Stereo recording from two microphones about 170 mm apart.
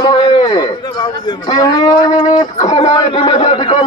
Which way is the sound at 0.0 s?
25° left (ahead or behind).